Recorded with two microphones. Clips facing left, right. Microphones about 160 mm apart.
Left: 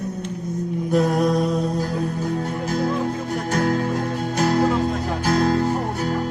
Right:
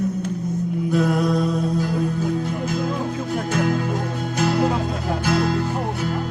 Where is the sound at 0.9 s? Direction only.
40° left (ahead or behind).